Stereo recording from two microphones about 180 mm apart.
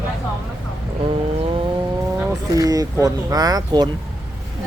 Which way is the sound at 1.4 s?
30° right (ahead or behind).